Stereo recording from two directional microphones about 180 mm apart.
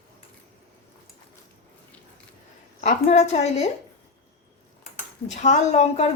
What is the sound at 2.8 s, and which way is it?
Speech, 40° left (ahead or behind).